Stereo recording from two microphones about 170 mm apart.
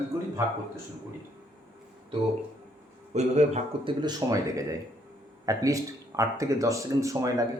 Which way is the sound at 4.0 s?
25° right (ahead or behind).